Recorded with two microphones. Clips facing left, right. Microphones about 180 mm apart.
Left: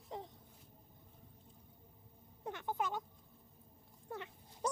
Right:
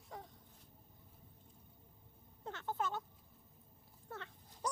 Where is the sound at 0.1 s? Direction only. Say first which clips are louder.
Left 5 dB; 20° left (ahead or behind).